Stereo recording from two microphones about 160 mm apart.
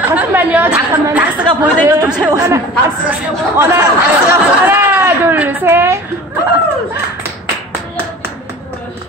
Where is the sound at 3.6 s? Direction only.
15° right (ahead or behind).